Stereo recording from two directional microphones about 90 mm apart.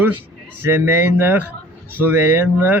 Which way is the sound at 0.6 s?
25° right (ahead or behind).